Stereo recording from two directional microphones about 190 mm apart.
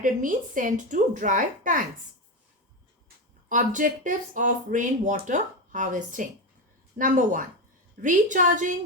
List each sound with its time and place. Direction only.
0.0 s speech: 45° right (ahead or behind)
3.5 s speech: 40° right (ahead or behind)